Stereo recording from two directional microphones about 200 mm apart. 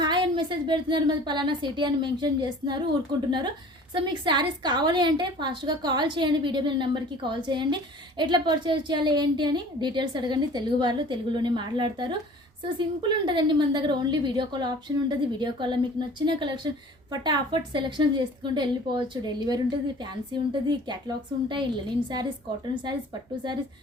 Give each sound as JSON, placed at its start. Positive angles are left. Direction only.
{"t": 0.0, "sound": "a woman's voice", "side_deg": -25}
{"t": 22.7, "sound": "a woman's voice", "side_deg": -25}